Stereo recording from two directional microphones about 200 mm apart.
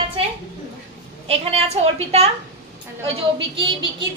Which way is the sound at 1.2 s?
30° right (ahead or behind).